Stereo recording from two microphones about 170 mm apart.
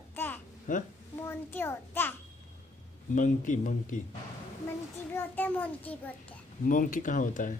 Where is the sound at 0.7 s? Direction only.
50° left (ahead or behind).